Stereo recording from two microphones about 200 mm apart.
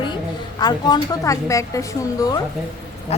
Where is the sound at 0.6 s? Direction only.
20° left (ahead or behind).